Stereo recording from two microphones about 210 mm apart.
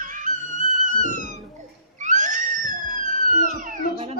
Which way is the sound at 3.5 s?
35° right (ahead or behind).